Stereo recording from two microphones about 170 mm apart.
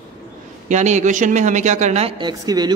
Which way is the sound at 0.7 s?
45° right (ahead or behind).